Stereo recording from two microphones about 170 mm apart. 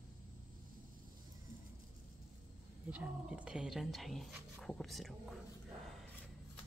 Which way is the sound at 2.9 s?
10° right (ahead or behind).